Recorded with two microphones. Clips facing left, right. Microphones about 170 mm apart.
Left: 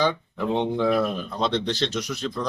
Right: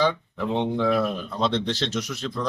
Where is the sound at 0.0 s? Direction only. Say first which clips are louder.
Even; centre (ahead or behind).